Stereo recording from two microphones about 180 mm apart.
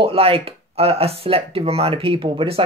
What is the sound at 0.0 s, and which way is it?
Speech, 30° right (ahead or behind).